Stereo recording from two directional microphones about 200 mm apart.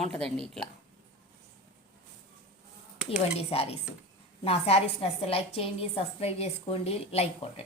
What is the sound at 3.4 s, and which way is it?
A woman's voice, 30° left (ahead or behind).